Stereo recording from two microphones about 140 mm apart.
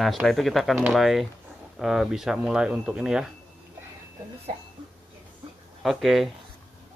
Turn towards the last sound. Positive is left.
turn(degrees=0)  # may be behind; listen again after turning